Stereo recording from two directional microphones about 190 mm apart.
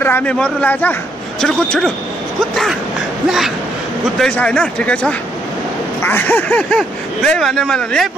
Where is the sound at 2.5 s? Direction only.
Centre (ahead or behind).